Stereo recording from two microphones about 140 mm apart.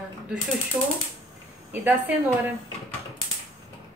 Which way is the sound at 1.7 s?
10° right (ahead or behind).